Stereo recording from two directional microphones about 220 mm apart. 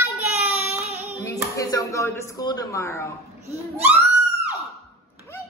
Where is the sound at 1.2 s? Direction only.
15° left (ahead or behind).